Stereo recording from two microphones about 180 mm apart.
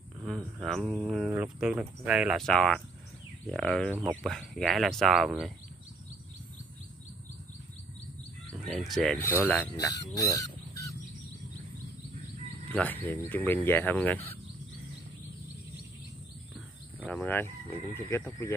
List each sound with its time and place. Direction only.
0.2 s a sound: centre (ahead or behind)
0.8 s speech: 5° right (ahead or behind)
3.9 s speech: 10° right (ahead or behind)
4.2 s speech: centre (ahead or behind)
8.6 s speech: centre (ahead or behind)
9.4 s speech: 15° left (ahead or behind)
10.1 s goose: 20° left (ahead or behind)
12.7 s speech: 10° left (ahead or behind)
17.1 s speech: 10° left (ahead or behind)